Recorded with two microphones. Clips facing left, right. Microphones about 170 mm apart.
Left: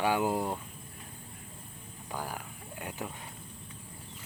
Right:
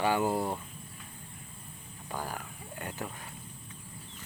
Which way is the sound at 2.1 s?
10° left (ahead or behind).